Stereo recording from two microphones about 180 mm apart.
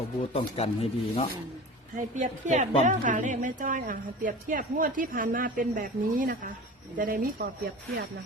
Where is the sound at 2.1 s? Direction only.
40° right (ahead or behind).